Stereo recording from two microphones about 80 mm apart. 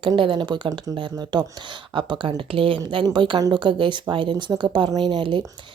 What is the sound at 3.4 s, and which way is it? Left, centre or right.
Speech, right.